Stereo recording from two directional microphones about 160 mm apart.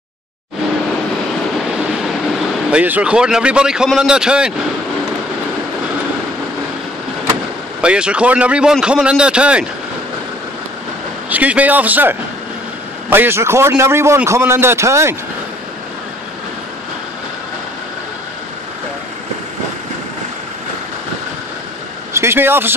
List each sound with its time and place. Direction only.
2.7 s a man's voice: 10° right (ahead or behind)
7.8 s a man's voice: 5° right (ahead or behind)
11.2 s a man's voice: 10° right (ahead or behind)
22.1 s speech: 15° right (ahead or behind)